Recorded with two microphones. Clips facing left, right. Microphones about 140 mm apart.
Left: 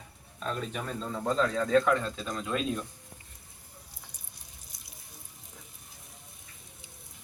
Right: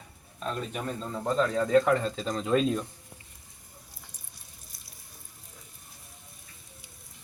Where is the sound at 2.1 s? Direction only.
35° right (ahead or behind).